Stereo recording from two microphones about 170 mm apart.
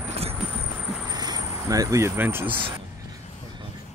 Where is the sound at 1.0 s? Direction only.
25° right (ahead or behind).